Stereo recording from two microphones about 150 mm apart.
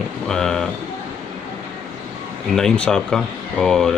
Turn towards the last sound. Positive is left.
turn(degrees=5)  # may be behind; listen again after turning